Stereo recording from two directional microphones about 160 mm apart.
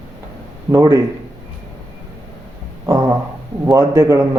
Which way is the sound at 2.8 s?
20° right (ahead or behind).